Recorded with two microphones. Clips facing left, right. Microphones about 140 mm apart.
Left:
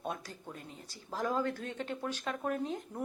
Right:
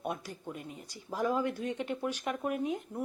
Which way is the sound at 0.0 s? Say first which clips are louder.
Right 3 dB; 10° right (ahead or behind).